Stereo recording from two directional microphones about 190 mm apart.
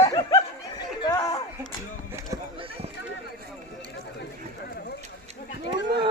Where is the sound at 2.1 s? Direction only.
15° right (ahead or behind).